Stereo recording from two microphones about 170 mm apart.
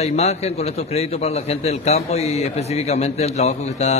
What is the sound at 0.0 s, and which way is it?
A man's voice, 40° left (ahead or behind).